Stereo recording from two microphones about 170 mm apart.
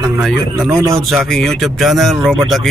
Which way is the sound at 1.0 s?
Centre (ahead or behind).